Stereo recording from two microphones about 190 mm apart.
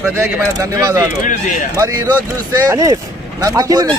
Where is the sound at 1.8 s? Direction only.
20° right (ahead or behind).